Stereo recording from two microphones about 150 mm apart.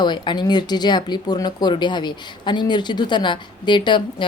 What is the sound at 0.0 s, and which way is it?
Speech, 30° left (ahead or behind).